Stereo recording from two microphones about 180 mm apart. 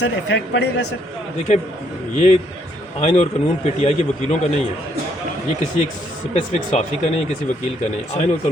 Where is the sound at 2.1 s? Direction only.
40° left (ahead or behind).